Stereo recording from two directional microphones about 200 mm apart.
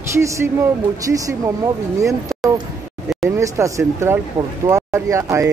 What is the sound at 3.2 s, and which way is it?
Speech, 15° right (ahead or behind).